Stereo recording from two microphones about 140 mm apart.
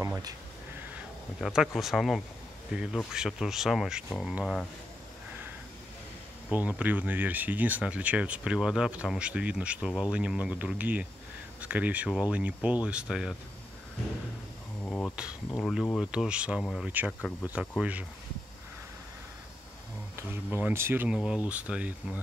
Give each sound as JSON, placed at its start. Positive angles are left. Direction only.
{"t": 0.0, "sound": "speech", "side_deg": -20}
{"t": 1.4, "sound": "speech", "side_deg": 0}
{"t": 6.5, "sound": "speech", "side_deg": -10}
{"t": 14.9, "sound": "speech", "side_deg": 10}
{"t": 15.1, "sound": "speech", "side_deg": -5}
{"t": 15.6, "sound": "speech", "side_deg": 5}
{"t": 20.2, "sound": "speech", "side_deg": -15}